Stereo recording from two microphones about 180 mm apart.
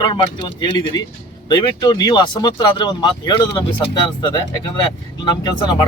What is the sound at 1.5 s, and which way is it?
Speech, 25° left (ahead or behind).